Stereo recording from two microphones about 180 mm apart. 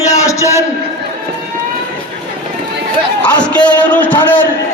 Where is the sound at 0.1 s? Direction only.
15° left (ahead or behind).